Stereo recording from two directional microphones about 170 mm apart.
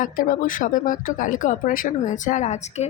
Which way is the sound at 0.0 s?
50° left (ahead or behind).